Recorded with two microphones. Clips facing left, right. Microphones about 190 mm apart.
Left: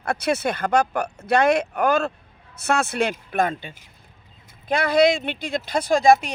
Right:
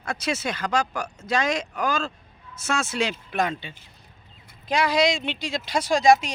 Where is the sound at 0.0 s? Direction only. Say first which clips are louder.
Left 5 dB; 60° left (ahead or behind).